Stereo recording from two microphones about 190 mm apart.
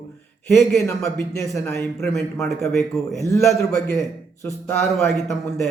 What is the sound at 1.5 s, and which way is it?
Speech, 15° left (ahead or behind).